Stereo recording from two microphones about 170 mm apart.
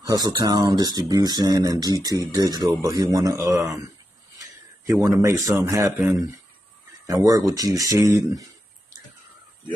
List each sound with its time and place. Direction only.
0.0 s speech: 20° right (ahead or behind)